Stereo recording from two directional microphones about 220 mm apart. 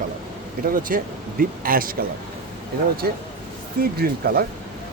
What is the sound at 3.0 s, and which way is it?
Speech, 45° right (ahead or behind).